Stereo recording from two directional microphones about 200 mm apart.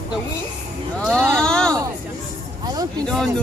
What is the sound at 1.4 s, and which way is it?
Speech, 5° left (ahead or behind).